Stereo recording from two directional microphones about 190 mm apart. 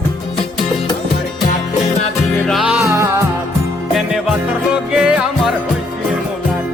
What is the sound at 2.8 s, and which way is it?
Music, 15° right (ahead or behind).